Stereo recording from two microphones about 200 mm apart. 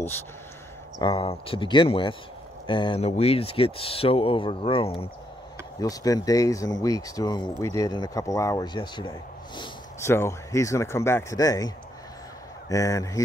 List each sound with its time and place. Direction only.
0.9 s speech: 25° left (ahead or behind)